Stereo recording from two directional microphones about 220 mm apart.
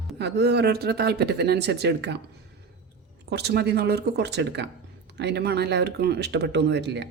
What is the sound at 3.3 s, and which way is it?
Speech, 50° right (ahead or behind).